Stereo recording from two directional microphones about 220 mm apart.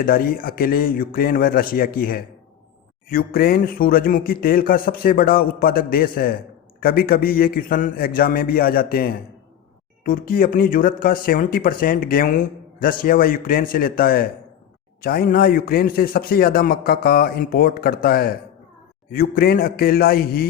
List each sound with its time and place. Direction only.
0.0 s a man's voice: 40° left (ahead or behind)